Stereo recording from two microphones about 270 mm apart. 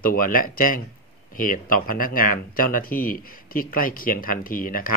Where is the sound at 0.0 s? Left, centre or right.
Left.